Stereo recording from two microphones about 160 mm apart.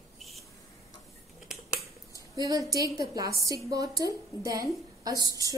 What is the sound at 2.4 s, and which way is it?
A woman's voice, 20° right (ahead or behind).